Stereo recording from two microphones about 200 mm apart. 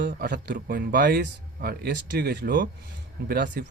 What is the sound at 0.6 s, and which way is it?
Speech, 45° right (ahead or behind).